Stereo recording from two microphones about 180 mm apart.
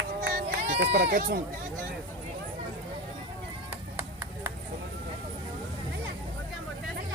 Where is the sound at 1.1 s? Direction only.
50° right (ahead or behind).